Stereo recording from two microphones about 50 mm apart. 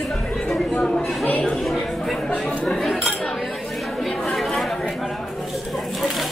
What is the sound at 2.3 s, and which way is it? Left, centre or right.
Chatter, centre.